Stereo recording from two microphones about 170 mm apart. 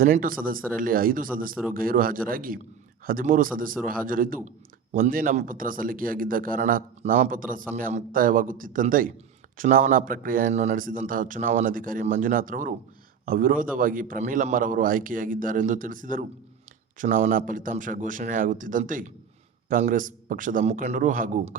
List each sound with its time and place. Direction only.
0.0 s a man's voice: 55° right (ahead or behind)